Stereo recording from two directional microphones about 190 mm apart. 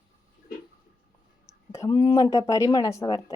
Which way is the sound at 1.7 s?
20° left (ahead or behind).